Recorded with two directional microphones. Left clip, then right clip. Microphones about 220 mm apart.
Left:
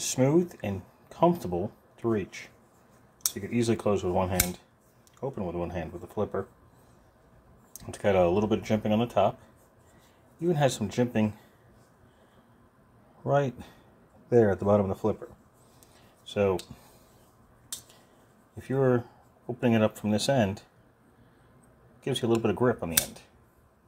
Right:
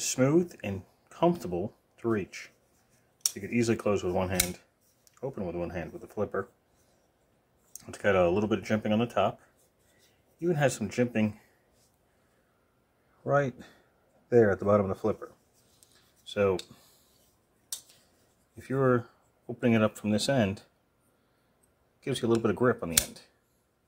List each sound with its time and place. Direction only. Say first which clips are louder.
0.0 s speech: left 1 dB; 5° right (ahead or behind)
3.2 s a sound: even; 5° left (ahead or behind)
3.5 s speech: left 1 dB; 5° right (ahead or behind)
7.7 s speech: left 1 dB; 5° right (ahead or behind)
10.4 s speech: left 1 dB; 5° right (ahead or behind)
13.2 s speech: left 1 dB; centre (ahead or behind)
16.3 s speech: left 1 dB; 5° right (ahead or behind)
18.6 s speech: left 1 dB; 10° right (ahead or behind)
22.0 s speech: left 1 dB; 10° right (ahead or behind)